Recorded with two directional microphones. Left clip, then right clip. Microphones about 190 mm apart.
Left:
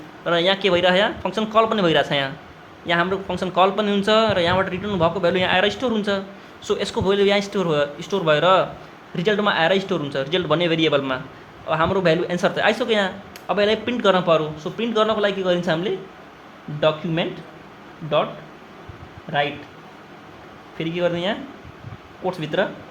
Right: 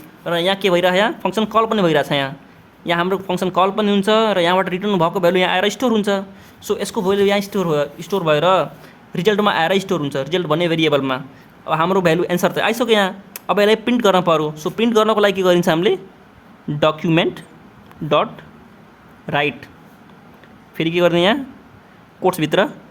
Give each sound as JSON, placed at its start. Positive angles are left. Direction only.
{"t": 0.3, "sound": "speech", "side_deg": -30}
{"t": 20.7, "sound": "speech", "side_deg": -40}